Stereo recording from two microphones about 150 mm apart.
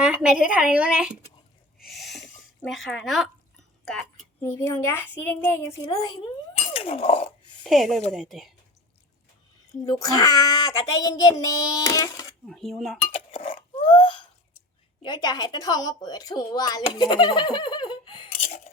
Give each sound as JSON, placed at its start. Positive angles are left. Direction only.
{"t": 0.0, "sound": "a woman's voice", "side_deg": -5}
{"t": 1.9, "sound": "a sound", "side_deg": 0}
{"t": 2.6, "sound": "speech", "side_deg": 0}
{"t": 4.4, "sound": "a woman's voice", "side_deg": 15}
{"t": 6.7, "sound": "a sound", "side_deg": 40}
{"t": 7.6, "sound": "speech", "side_deg": 0}
{"t": 9.8, "sound": "speech", "side_deg": 25}
{"t": 12.5, "sound": "speech", "side_deg": 0}
{"t": 13.1, "sound": "speech", "side_deg": 40}
{"t": 13.6, "sound": "a sound", "side_deg": 40}
{"t": 15.0, "sound": "speech", "side_deg": 30}
{"t": 18.4, "sound": "speech", "side_deg": 45}